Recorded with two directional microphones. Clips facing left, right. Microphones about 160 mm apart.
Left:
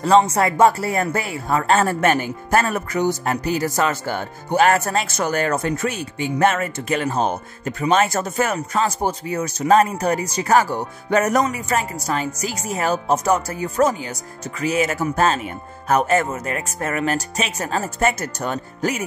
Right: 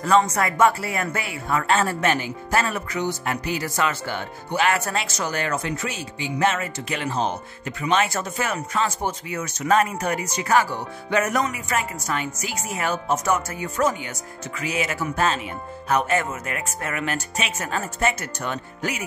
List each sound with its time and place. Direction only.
0.0 s speech: 30° left (ahead or behind)